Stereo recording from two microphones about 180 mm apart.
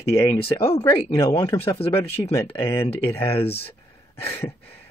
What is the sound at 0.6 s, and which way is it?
Speech, 35° left (ahead or behind).